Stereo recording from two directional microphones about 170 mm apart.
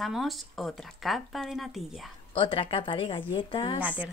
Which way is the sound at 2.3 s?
30° left (ahead or behind).